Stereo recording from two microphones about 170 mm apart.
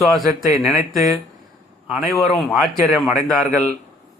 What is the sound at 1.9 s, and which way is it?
Speech, centre (ahead or behind).